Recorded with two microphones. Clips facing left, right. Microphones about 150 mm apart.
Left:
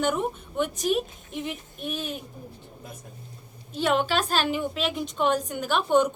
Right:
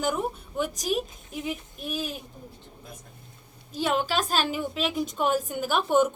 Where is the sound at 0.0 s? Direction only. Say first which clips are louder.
Left 2 dB; centre (ahead or behind).